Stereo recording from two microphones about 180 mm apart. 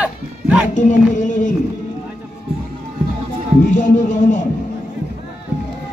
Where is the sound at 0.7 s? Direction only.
45° left (ahead or behind).